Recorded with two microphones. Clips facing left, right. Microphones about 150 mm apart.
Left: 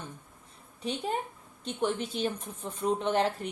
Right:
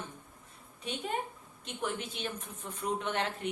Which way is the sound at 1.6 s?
35° left (ahead or behind).